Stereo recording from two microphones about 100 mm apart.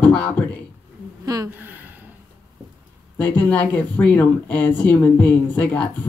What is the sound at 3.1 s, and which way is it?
Speech, 15° left (ahead or behind).